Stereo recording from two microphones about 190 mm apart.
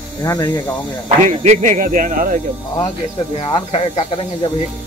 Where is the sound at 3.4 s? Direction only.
25° left (ahead or behind).